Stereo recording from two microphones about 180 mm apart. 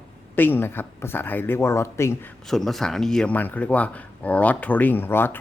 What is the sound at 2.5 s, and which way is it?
Speech, centre (ahead or behind).